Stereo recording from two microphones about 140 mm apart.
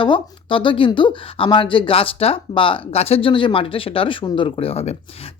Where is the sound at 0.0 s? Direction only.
35° left (ahead or behind).